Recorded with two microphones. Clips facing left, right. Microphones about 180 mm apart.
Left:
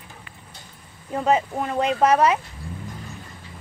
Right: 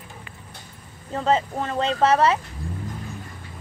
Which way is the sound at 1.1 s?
10° left (ahead or behind).